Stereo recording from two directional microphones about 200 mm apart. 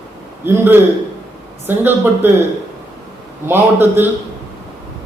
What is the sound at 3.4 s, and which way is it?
Speech, 10° right (ahead or behind).